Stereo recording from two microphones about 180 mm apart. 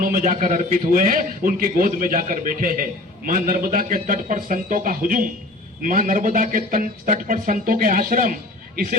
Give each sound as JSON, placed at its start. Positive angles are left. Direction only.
{"t": 0.0, "sound": "a man's voice", "side_deg": -45}